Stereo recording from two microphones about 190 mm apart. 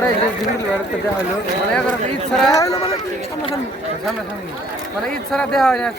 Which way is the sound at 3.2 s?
30° left (ahead or behind).